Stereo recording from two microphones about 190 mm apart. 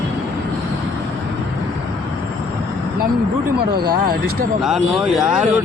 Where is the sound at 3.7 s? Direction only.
55° right (ahead or behind).